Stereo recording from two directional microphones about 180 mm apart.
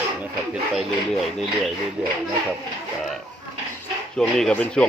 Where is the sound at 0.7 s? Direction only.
Centre (ahead or behind).